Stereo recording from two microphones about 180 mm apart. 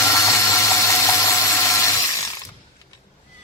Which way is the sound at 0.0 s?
15° left (ahead or behind).